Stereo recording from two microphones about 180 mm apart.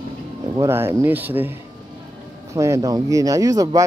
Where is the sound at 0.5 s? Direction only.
15° right (ahead or behind).